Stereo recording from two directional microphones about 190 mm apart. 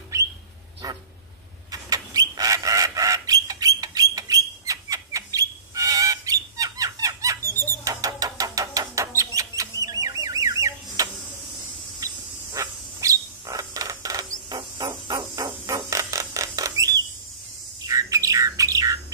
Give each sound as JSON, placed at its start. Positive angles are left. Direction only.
{"t": 0.1, "sound": "bird", "side_deg": -15}
{"t": 0.8, "sound": "dog", "side_deg": -20}
{"t": 1.7, "sound": "bird", "side_deg": -20}
{"t": 12.0, "sound": "a sound", "side_deg": -20}
{"t": 12.5, "sound": "bird", "side_deg": -15}